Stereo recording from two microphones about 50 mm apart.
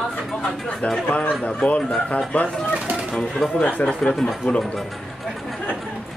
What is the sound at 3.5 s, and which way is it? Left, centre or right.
Speech, left.